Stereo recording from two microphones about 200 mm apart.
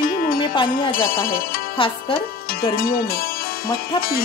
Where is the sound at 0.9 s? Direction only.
45° left (ahead or behind).